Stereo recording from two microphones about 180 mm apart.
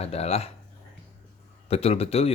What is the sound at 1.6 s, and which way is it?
Speech, 35° left (ahead or behind).